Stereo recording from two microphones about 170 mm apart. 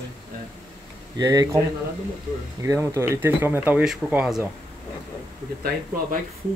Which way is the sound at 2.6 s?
15° right (ahead or behind).